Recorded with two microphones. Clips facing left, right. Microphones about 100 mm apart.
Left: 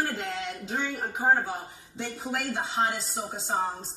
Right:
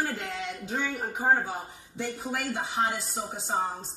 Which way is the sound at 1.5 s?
20° left (ahead or behind).